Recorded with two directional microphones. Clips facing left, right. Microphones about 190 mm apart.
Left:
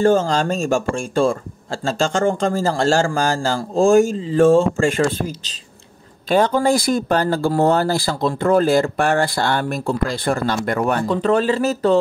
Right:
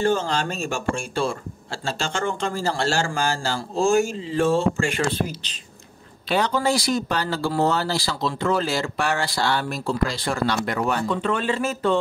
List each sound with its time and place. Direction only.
0.0 s a man's voice: 45° left (ahead or behind)
6.2 s a man's voice: 50° left (ahead or behind)
11.1 s speech: 35° left (ahead or behind)